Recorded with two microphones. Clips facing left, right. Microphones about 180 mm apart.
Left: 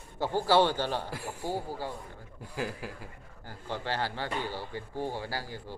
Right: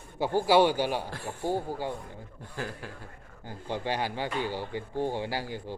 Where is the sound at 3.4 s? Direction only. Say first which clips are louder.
Right 3 dB; 15° right (ahead or behind).